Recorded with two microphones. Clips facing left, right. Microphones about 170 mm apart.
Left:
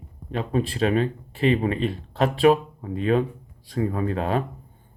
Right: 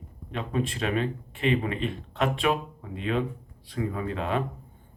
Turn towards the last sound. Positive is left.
turn(degrees=40)  # may be behind; listen again after turning